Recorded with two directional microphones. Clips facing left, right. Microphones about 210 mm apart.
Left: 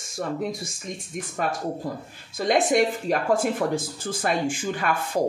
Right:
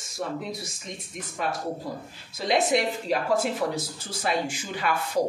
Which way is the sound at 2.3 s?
50° left (ahead or behind).